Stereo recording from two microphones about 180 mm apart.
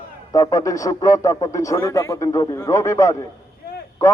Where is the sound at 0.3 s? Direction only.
20° left (ahead or behind).